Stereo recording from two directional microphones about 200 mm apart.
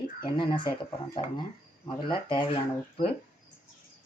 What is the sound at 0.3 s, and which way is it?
Speech, 25° left (ahead or behind).